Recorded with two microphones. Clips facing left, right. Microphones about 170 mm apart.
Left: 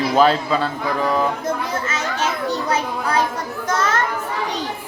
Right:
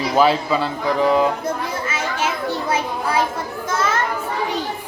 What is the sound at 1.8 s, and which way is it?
Children playing, 10° right (ahead or behind).